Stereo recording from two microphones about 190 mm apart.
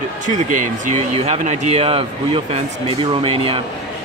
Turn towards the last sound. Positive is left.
turn(degrees=-30)  # may be behind; listen again after turning